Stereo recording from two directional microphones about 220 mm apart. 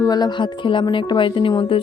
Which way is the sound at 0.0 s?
20° left (ahead or behind).